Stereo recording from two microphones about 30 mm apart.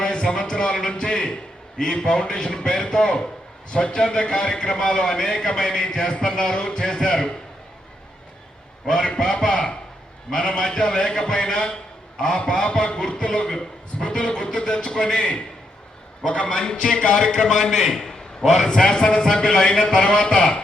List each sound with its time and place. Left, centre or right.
0.0 s a sound: left
0.9 s a man's voice: left
5.2 s speech: left
9.0 s a man's voice: left
16.3 s a man's voice: left; by 18.2 s centre
18.5 s a man's voice: left